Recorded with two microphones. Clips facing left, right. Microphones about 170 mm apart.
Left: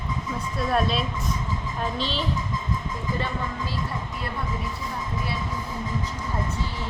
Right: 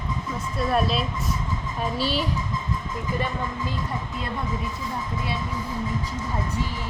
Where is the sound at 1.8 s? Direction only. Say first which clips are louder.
Right 3 dB; 10° right (ahead or behind).